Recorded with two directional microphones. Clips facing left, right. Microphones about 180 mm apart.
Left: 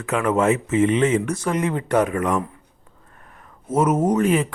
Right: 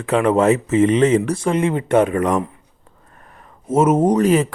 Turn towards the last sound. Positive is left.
turn(degrees=-40)  # may be behind; listen again after turning